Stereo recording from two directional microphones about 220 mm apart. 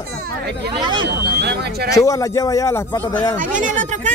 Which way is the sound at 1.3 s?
50° right (ahead or behind).